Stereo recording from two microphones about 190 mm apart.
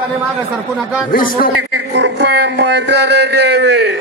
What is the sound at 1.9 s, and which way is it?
Speech, 65° right (ahead or behind).